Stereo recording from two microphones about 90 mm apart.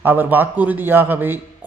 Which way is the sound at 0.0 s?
20° right (ahead or behind).